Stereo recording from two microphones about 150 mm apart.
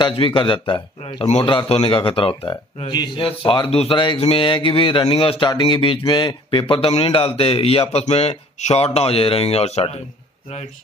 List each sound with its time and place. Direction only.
0.0 s speech: 35° left (ahead or behind)